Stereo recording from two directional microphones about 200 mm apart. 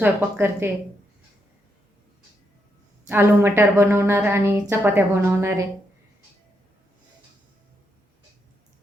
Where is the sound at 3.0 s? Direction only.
10° right (ahead or behind).